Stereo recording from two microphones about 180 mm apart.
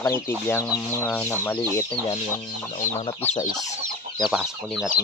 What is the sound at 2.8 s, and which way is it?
Chicken, 35° left (ahead or behind).